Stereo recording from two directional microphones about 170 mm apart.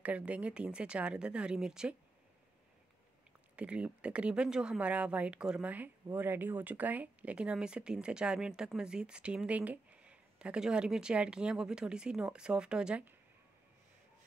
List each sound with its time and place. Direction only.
0.0 s speech: 10° right (ahead or behind)
3.5 s speech: 5° right (ahead or behind)